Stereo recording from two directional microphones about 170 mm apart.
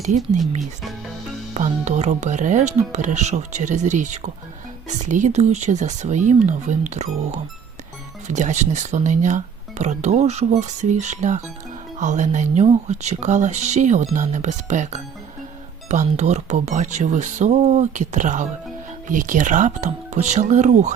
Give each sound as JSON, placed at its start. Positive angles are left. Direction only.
{"t": 1.5, "sound": "speech", "side_deg": -45}